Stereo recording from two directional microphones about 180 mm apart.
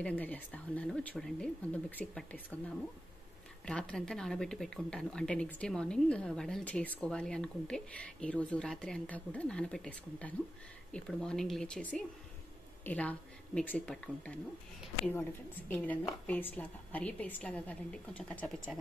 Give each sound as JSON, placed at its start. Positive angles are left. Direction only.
{"t": 0.0, "sound": "a woman's voice", "side_deg": 10}
{"t": 3.6, "sound": "a woman's voice", "side_deg": 5}
{"t": 15.7, "sound": "a woman's voice", "side_deg": 10}